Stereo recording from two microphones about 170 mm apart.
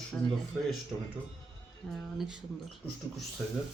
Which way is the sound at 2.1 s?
5° right (ahead or behind).